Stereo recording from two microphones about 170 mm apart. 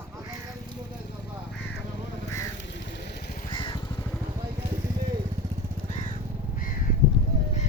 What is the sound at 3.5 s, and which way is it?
Vehicle, 25° left (ahead or behind).